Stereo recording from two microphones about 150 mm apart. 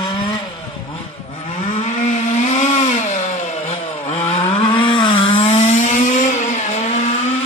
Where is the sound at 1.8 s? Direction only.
50° left (ahead or behind).